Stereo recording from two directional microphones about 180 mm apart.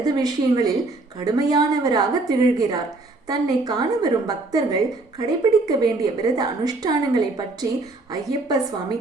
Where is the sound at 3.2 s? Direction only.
20° right (ahead or behind).